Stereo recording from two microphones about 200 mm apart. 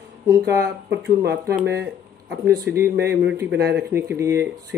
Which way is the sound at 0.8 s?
55° right (ahead or behind).